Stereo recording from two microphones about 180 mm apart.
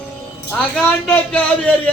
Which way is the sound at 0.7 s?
5° left (ahead or behind).